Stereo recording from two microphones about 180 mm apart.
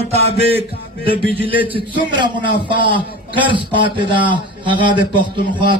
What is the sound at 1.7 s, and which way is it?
A man's voice, 25° right (ahead or behind).